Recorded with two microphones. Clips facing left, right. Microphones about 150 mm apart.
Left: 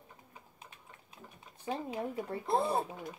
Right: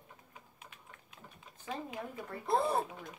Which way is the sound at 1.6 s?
25° left (ahead or behind).